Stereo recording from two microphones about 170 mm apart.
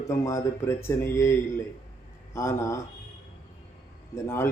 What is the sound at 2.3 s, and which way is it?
Speech, 15° left (ahead or behind).